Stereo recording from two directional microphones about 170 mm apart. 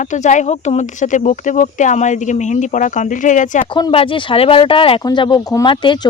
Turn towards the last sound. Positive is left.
turn(degrees=30)  # may be behind; listen again after turning